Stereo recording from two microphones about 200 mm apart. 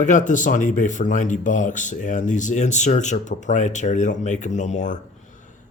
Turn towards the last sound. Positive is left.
turn(degrees=35)  # may be behind; listen again after turning